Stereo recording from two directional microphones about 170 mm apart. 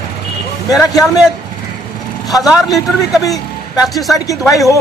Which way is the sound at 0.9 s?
20° left (ahead or behind).